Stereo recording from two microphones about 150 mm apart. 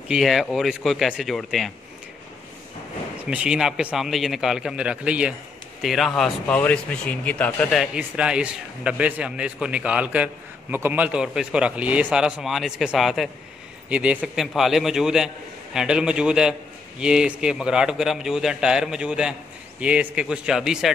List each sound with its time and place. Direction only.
0.1 s a man's voice: centre (ahead or behind)
3.3 s a man's voice: 5° right (ahead or behind); by 7.8 s 10° left (ahead or behind)
7.8 s a man's voice: 5° right (ahead or behind)